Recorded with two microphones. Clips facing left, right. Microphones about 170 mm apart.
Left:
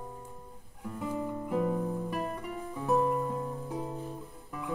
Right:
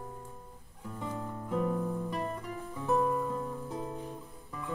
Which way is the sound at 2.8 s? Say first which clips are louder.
Left 1 dB; 15° left (ahead or behind).